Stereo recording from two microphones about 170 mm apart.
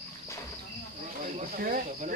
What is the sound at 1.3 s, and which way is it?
Speech, 50° right (ahead or behind).